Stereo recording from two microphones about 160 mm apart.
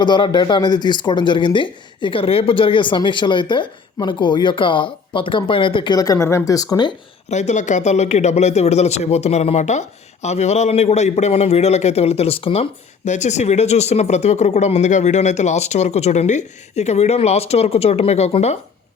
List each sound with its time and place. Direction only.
0.0 s speech: 30° left (ahead or behind)
7.3 s speech: 45° left (ahead or behind)
13.1 s speech: 45° left (ahead or behind)